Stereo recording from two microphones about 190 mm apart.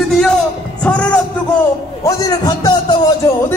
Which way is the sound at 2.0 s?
20° left (ahead or behind).